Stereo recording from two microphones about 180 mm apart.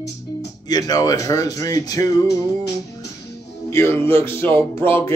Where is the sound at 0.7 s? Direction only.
20° left (ahead or behind).